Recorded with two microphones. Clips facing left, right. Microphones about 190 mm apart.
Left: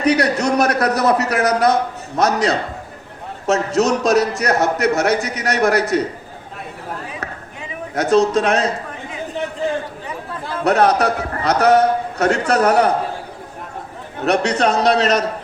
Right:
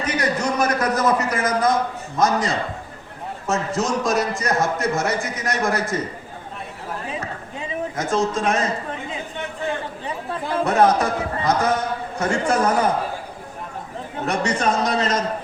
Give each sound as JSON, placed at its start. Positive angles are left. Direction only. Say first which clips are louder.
{"t": 0.0, "sound": "a man's voice", "louder": "left 6 dB", "side_deg": 70}
{"t": 7.9, "sound": "a man's voice", "louder": "left 8 dB", "side_deg": 70}
{"t": 10.6, "sound": "a man's voice", "louder": "left 3 dB", "side_deg": 70}
{"t": 14.3, "sound": "a man's voice", "louder": "left 5 dB", "side_deg": 70}